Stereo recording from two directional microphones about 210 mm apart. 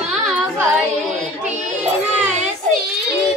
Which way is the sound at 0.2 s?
5° right (ahead or behind).